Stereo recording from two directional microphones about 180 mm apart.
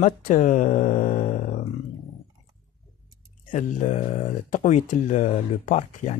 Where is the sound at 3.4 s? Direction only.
45° left (ahead or behind).